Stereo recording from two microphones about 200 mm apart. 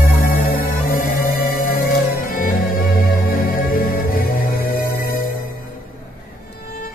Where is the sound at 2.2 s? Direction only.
45° left (ahead or behind).